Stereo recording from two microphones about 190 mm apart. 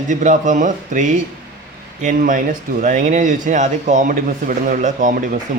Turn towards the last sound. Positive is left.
turn(degrees=-45)  # may be behind; listen again after turning